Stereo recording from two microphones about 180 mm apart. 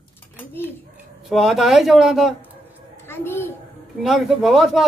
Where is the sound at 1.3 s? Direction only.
Centre (ahead or behind).